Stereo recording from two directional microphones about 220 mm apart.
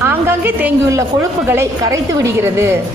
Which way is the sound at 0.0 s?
10° right (ahead or behind).